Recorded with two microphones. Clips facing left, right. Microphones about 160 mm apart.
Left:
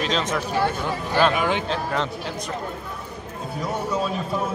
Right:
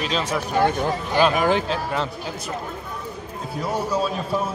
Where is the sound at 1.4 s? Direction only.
40° right (ahead or behind).